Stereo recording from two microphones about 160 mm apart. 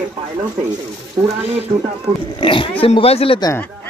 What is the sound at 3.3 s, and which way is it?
Speech, 25° left (ahead or behind).